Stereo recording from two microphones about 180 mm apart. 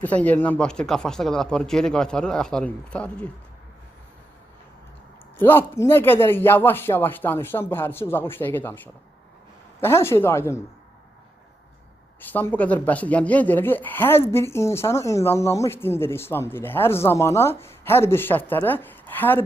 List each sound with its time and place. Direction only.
0.0 s speech: 10° left (ahead or behind)
5.4 s speech: 15° left (ahead or behind)
12.2 s speech: 10° left (ahead or behind)